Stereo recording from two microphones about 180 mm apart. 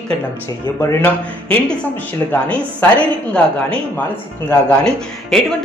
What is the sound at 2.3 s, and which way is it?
Speech, 10° left (ahead or behind).